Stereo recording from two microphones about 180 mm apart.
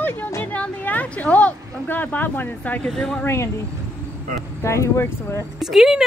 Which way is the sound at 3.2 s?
15° left (ahead or behind).